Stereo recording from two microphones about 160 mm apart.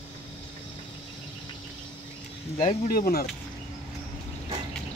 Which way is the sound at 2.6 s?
60° left (ahead or behind).